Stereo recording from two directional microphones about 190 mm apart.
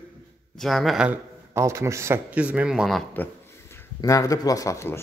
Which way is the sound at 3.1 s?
10° left (ahead or behind).